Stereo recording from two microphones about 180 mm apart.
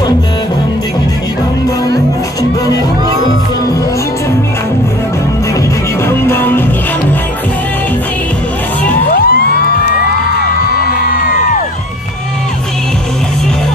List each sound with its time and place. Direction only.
6.0 s music: 15° left (ahead or behind)
9.1 s music: 55° left (ahead or behind)